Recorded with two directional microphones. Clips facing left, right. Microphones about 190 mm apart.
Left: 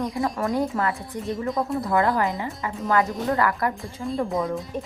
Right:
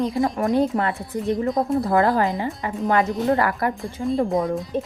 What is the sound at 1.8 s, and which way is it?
A woman's voice, 35° right (ahead or behind).